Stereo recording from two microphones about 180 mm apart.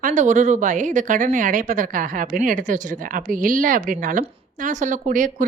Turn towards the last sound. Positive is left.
turn(degrees=-45)  # may be behind; listen again after turning